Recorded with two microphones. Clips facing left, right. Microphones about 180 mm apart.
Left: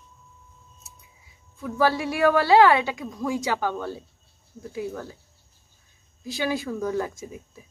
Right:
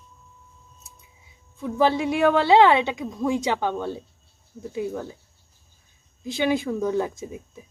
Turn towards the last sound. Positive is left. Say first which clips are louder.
# right 3 dB
turn(degrees=-20)  # may be behind; listen again after turning